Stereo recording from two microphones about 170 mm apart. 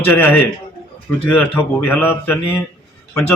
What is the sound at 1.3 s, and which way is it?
A man's voice, 10° left (ahead or behind).